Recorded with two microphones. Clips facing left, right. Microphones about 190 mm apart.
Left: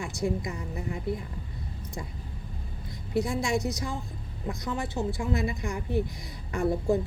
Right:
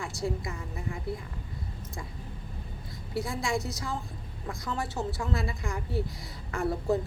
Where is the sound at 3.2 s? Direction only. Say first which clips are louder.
Left 4 dB; 20° left (ahead or behind).